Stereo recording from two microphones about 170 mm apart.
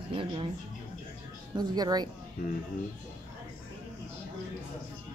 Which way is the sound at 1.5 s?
25° right (ahead or behind).